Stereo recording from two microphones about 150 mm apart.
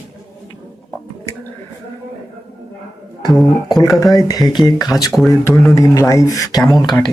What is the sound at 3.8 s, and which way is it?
Speech, 25° left (ahead or behind).